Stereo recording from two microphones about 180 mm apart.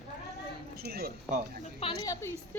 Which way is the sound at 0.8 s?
60° right (ahead or behind).